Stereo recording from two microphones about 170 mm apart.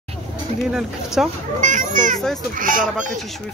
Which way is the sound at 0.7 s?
5° right (ahead or behind).